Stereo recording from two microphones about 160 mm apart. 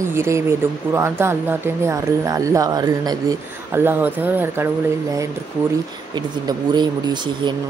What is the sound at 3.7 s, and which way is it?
Speech, 15° right (ahead or behind).